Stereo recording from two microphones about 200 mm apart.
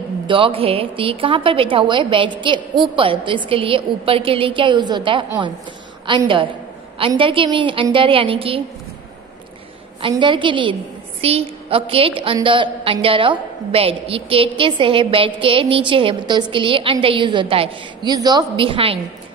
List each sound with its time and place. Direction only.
0.3 s a woman's voice: 25° right (ahead or behind)
10.0 s a woman's voice: 25° right (ahead or behind)